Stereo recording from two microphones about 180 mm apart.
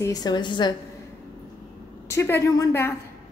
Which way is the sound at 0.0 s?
20° left (ahead or behind).